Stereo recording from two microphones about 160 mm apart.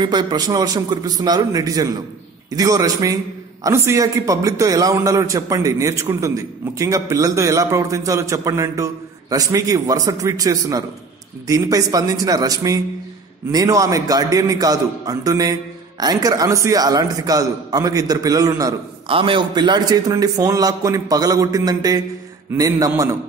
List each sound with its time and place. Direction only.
0.0 s a man's voice: 25° right (ahead or behind)
19.0 s a man's voice: 35° right (ahead or behind)